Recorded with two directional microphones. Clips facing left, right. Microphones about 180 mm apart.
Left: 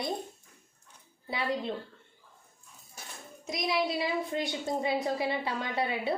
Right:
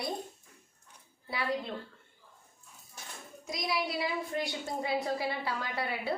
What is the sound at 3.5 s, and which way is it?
A woman's voice, 25° left (ahead or behind).